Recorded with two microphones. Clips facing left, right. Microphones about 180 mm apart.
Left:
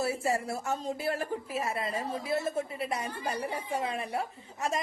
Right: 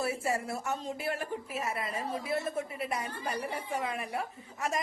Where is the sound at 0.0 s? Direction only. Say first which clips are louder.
Left 2 dB; 30° left (ahead or behind).